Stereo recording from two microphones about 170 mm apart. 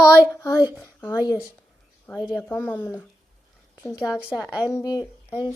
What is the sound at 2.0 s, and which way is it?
Speech, centre (ahead or behind).